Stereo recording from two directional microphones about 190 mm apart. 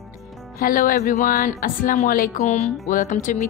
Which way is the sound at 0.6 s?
50° left (ahead or behind).